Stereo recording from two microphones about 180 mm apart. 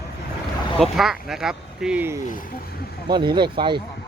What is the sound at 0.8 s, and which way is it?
Speech, centre (ahead or behind).